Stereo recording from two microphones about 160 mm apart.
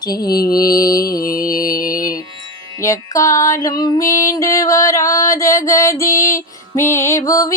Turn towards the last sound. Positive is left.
turn(degrees=20)  # may be behind; listen again after turning